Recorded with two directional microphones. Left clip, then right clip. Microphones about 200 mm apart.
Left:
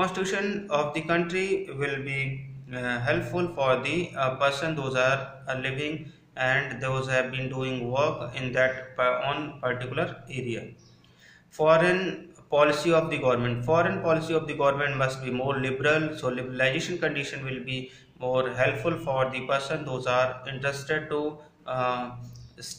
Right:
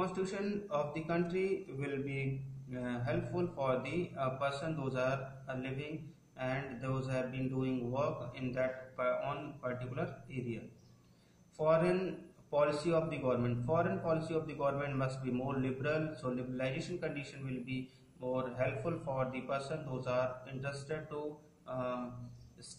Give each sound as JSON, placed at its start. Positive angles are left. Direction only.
{"t": 0.0, "sound": "a man's voice", "side_deg": 10}
{"t": 11.5, "sound": "a man's voice", "side_deg": 10}